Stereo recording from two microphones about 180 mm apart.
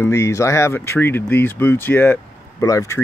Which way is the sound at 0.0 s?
15° left (ahead or behind).